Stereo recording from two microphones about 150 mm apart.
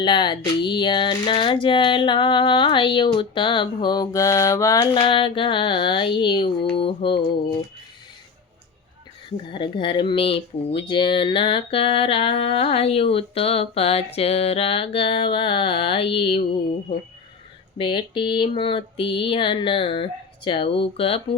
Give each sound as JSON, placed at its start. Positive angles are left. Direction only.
{"t": 0.0, "sound": "speech", "side_deg": 30}
{"t": 4.9, "sound": "speech", "side_deg": 35}
{"t": 9.5, "sound": "speech", "side_deg": 35}
{"t": 17.7, "sound": "speech", "side_deg": 35}